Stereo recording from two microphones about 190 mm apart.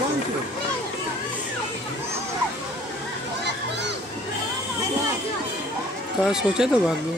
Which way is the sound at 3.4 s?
65° right (ahead or behind).